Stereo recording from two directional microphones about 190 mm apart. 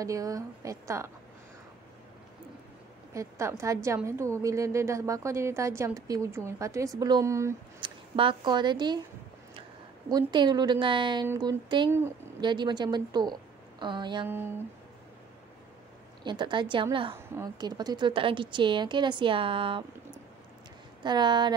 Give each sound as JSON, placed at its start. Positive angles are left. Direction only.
{"t": 0.0, "sound": "a woman's voice", "side_deg": -15}
{"t": 3.1, "sound": "a woman's voice", "side_deg": -15}
{"t": 10.0, "sound": "a woman's voice", "side_deg": -20}
{"t": 14.2, "sound": "a woman's voice", "side_deg": -10}
{"t": 16.3, "sound": "a woman's voice", "side_deg": -25}
{"t": 21.0, "sound": "a woman's voice", "side_deg": -25}